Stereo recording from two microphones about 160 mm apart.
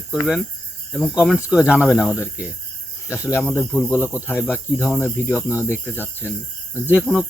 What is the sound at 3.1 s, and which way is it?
Speech, 15° left (ahead or behind).